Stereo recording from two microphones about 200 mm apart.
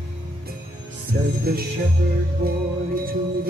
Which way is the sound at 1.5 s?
50° right (ahead or behind).